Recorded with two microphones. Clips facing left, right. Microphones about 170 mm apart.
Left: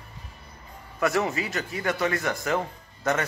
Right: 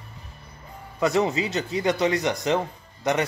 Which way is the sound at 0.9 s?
20° right (ahead or behind).